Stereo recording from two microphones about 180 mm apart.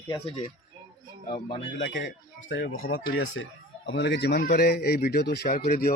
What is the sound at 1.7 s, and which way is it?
A man's voice, 85° left.